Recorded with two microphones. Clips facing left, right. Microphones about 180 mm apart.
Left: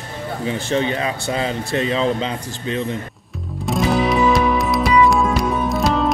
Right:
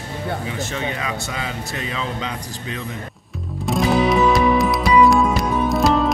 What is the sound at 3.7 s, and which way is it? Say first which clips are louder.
Music: even; centre (ahead or behind).